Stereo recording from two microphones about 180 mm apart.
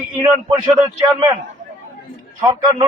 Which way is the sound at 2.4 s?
25° right (ahead or behind).